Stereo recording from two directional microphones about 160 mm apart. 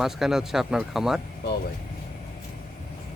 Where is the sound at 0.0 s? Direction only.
Centre (ahead or behind).